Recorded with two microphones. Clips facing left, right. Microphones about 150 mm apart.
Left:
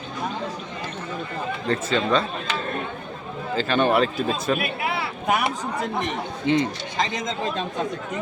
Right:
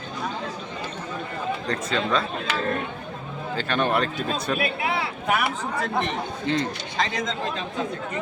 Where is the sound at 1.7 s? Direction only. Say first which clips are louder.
Left 4 dB; centre (ahead or behind).